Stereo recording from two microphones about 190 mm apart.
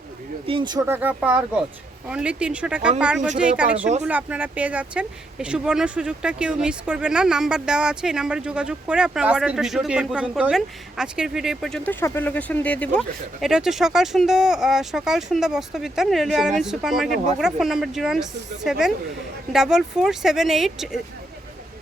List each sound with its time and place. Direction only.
0.4 s speech: 25° right (ahead or behind)
0.9 s speech: 10° right (ahead or behind)